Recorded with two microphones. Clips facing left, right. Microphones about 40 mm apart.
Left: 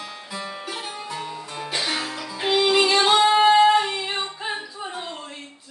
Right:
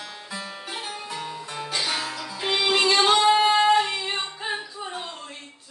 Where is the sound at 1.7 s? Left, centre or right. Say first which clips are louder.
Left 1 dB; centre.